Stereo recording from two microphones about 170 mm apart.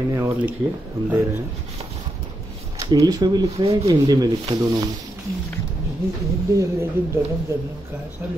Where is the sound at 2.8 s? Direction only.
20° right (ahead or behind).